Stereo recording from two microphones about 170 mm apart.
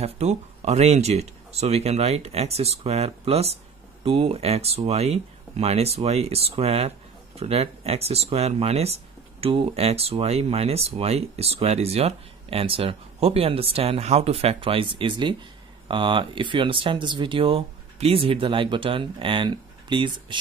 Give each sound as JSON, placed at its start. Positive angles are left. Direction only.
{"t": 0.0, "sound": "speech", "side_deg": -40}